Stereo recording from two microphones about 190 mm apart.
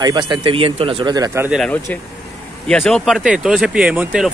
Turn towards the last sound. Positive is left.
turn(degrees=-5)  # may be behind; listen again after turning